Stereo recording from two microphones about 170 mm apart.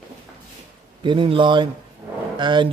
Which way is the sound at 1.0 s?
30° right (ahead or behind).